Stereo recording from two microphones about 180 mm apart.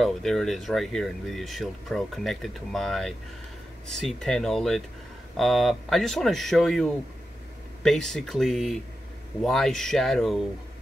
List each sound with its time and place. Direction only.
0.0 s speech: centre (ahead or behind)